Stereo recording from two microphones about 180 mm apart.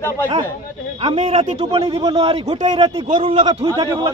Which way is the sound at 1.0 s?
30° right (ahead or behind).